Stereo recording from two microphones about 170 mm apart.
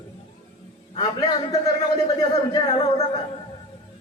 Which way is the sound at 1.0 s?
25° left (ahead or behind).